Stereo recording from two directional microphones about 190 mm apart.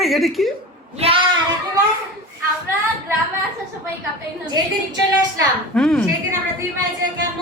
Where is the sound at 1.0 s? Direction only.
30° right (ahead or behind).